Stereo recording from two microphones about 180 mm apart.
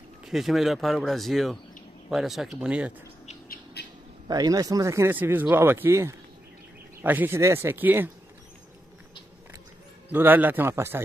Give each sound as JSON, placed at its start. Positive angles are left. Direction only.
{"t": 0.2, "sound": "speech", "side_deg": 0}
{"t": 3.8, "sound": "a sound", "side_deg": 65}
{"t": 4.3, "sound": "speech", "side_deg": -20}
{"t": 10.0, "sound": "speech", "side_deg": -10}